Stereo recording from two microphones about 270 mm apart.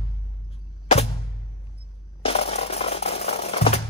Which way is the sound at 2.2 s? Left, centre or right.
Left.